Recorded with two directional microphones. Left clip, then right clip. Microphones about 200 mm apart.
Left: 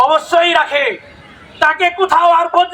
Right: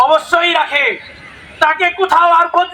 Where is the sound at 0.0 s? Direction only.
15° left (ahead or behind).